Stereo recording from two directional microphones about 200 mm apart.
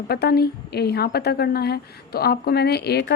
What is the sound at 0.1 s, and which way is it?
A woman's voice, 50° left (ahead or behind).